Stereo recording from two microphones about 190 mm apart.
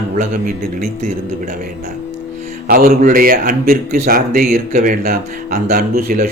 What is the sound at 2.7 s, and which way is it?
A man's voice, 50° right (ahead or behind).